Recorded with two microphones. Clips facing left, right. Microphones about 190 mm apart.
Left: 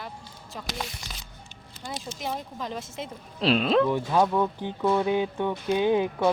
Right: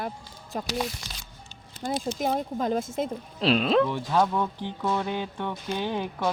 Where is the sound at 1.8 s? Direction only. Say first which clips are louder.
Right 7 dB; 55° right (ahead or behind).